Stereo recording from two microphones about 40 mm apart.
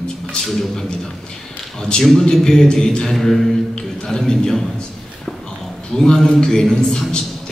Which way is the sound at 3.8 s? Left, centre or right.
Centre.